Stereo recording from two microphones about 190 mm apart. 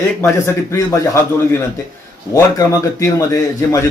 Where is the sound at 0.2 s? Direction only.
15° left (ahead or behind).